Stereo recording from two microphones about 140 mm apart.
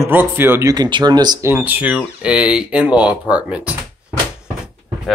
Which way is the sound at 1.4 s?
15° right (ahead or behind).